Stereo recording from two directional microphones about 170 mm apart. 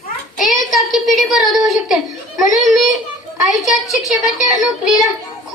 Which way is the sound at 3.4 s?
Centre (ahead or behind).